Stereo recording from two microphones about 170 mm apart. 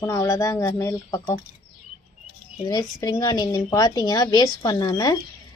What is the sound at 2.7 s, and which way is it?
Speech, 20° left (ahead or behind).